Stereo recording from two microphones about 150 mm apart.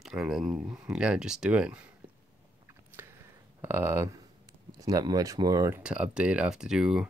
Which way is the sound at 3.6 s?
15° right (ahead or behind).